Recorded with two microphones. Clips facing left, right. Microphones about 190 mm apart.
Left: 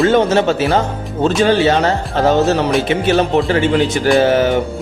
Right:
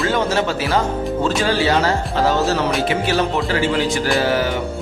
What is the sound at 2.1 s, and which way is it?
Speech, 60° left (ahead or behind).